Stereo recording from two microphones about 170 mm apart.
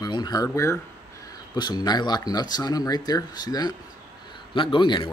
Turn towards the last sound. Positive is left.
turn(degrees=25)  # may be behind; listen again after turning